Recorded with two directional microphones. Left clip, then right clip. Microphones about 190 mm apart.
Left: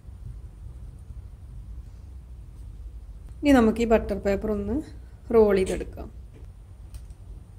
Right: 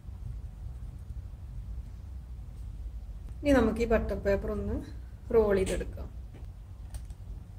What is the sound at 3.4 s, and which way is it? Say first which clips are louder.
A woman's voice: left 5 dB; 45° left (ahead or behind).